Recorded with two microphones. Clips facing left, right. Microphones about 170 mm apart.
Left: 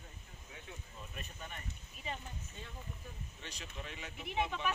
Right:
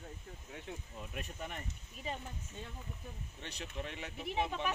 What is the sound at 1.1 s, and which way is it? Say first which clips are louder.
Speech: right 6 dB; 75° right (ahead or behind).